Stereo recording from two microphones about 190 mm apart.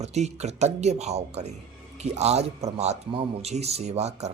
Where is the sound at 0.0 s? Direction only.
35° right (ahead or behind).